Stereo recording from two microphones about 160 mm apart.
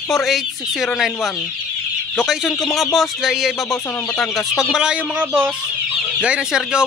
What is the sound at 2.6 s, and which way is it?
Speech, centre (ahead or behind).